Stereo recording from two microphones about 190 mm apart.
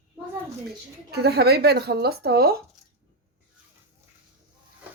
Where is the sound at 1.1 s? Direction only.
60° right (ahead or behind).